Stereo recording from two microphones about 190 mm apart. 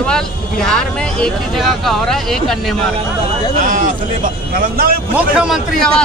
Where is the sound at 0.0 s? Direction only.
5° left (ahead or behind).